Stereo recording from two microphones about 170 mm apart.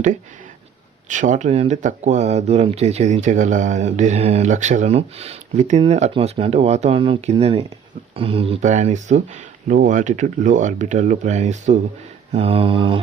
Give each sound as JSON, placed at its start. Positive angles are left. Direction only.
{"t": 1.0, "sound": "speech", "side_deg": -45}
{"t": 12.3, "sound": "speech", "side_deg": -35}